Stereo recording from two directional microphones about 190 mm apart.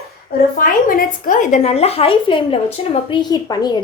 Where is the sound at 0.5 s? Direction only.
45° left (ahead or behind).